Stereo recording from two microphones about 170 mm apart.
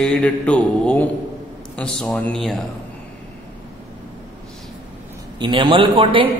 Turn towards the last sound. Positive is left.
turn(degrees=-30)  # may be behind; listen again after turning